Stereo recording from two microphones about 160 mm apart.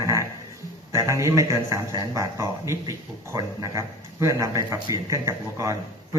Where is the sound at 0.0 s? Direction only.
20° right (ahead or behind).